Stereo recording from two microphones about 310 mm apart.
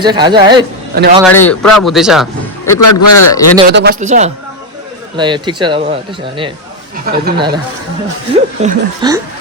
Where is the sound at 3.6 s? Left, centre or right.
Right; by 6.0 s centre.